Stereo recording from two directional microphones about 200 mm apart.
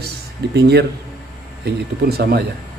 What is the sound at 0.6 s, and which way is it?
Speech, 55° right (ahead or behind).